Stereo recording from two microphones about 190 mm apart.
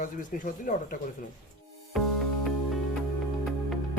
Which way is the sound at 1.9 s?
Centre (ahead or behind).